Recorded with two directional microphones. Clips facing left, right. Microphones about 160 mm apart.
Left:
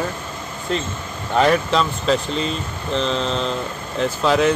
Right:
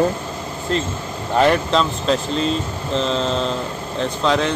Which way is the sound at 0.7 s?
Centre (ahead or behind).